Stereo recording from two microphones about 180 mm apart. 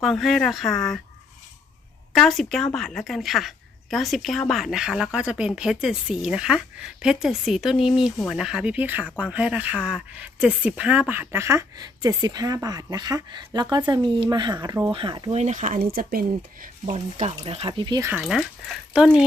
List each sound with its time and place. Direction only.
0.0 s a woman's voice: centre (ahead or behind)
2.1 s a woman's voice: centre (ahead or behind); by 16.6 s 55° right (ahead or behind)
16.8 s speech: 40° right (ahead or behind); by 18.1 s 20° right (ahead or behind)
18.1 s a woman's voice: centre (ahead or behind)